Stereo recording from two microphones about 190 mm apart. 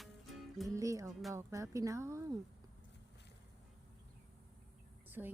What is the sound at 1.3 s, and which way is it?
Speech, 15° right (ahead or behind).